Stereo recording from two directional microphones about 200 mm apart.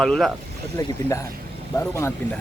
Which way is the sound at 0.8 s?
15° left (ahead or behind).